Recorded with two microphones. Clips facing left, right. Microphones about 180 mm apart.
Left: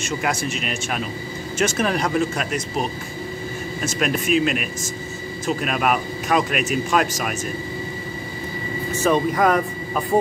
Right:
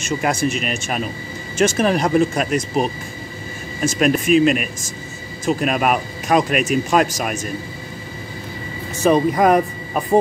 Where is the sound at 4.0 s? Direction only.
45° right (ahead or behind).